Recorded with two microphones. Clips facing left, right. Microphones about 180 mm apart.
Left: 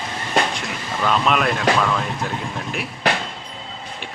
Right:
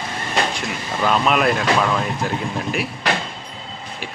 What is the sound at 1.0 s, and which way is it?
Speech, 5° right (ahead or behind).